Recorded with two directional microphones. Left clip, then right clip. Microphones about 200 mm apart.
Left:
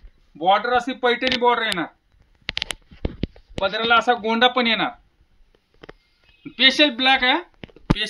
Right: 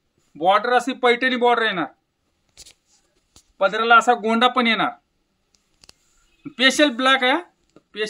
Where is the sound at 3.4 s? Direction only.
30° right (ahead or behind).